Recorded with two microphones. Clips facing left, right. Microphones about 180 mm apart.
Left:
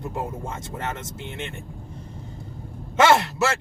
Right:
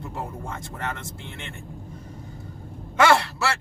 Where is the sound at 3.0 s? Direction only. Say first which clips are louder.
Left 2 dB; 20° left (ahead or behind).